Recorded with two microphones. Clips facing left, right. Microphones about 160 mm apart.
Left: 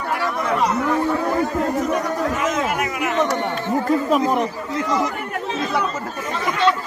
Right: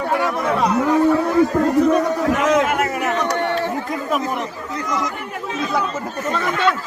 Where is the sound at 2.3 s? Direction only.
70° right (ahead or behind).